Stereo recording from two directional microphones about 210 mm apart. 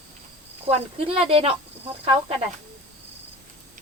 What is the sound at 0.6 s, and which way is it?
Speech, 25° right (ahead or behind).